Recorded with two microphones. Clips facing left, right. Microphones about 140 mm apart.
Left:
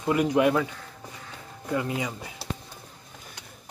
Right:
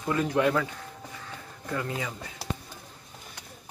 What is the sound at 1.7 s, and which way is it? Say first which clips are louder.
Speech: left 4 dB; 15° left (ahead or behind).